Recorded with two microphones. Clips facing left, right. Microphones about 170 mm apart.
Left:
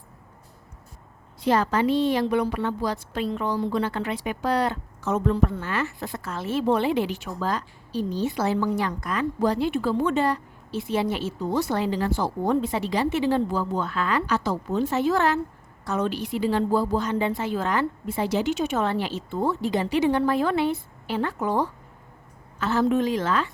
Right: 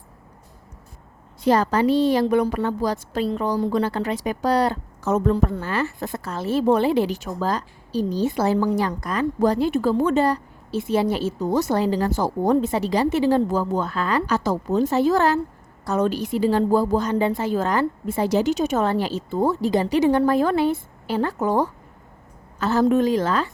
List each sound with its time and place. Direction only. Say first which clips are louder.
1.4 s a woman's voice: right 3 dB; 40° right (ahead or behind)